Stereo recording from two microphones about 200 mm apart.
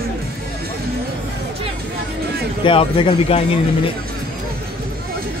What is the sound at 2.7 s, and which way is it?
Speech, 25° left (ahead or behind).